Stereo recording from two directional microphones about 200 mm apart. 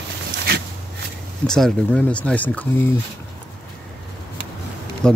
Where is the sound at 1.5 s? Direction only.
Centre (ahead or behind).